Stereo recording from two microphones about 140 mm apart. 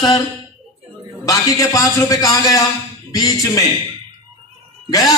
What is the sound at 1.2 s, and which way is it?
A man's voice, 25° left (ahead or behind).